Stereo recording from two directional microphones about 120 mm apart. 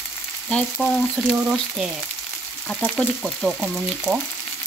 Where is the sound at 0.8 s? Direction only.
Centre (ahead or behind).